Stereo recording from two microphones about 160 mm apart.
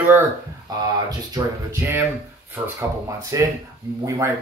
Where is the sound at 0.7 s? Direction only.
25° right (ahead or behind).